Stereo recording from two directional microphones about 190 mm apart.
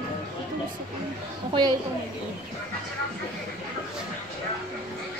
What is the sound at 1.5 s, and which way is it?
Speech, 20° right (ahead or behind).